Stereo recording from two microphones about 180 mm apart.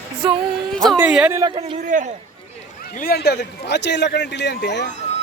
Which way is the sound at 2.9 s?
55° left (ahead or behind).